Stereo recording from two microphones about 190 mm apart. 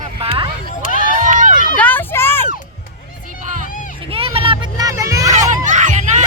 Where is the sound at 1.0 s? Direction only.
45° right (ahead or behind).